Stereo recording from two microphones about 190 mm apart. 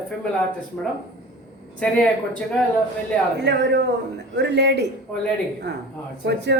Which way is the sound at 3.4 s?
65° right (ahead or behind).